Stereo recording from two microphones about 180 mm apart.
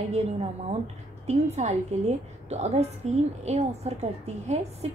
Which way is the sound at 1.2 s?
40° right (ahead or behind).